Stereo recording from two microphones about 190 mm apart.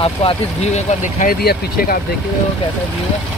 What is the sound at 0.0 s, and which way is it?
Speech, 30° left (ahead or behind).